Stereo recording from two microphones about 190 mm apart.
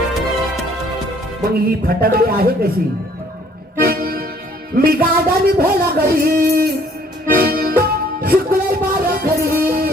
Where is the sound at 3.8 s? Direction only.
55° right (ahead or behind).